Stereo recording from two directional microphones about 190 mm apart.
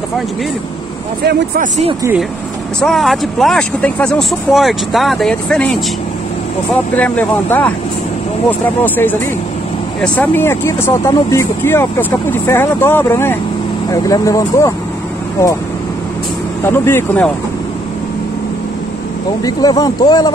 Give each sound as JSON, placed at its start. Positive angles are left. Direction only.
{"t": 2.8, "sound": "speech", "side_deg": 0}
{"t": 7.0, "sound": "speech", "side_deg": 10}
{"t": 16.6, "sound": "speech", "side_deg": 10}
{"t": 19.4, "sound": "speech", "side_deg": 20}